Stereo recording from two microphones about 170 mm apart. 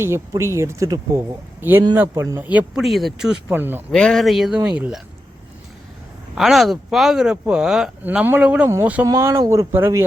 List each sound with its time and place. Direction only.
0.0 s speech: 15° right (ahead or behind)
3.9 s speech: 5° left (ahead or behind)
6.3 s speech: centre (ahead or behind)